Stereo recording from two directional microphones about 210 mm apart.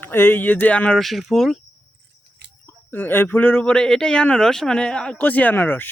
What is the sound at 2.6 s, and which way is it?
A man's voice, 10° left (ahead or behind).